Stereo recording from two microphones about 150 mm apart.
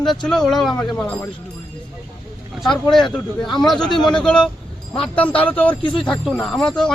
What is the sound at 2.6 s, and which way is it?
A man's voice, centre (ahead or behind).